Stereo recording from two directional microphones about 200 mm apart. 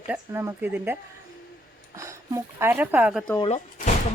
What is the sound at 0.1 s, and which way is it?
Speech, 10° right (ahead or behind).